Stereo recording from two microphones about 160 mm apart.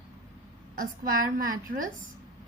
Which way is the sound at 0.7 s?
60° right (ahead or behind).